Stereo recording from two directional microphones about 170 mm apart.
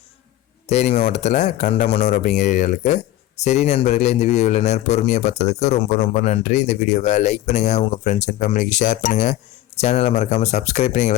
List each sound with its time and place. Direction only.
0.7 s speech: 40° left (ahead or behind)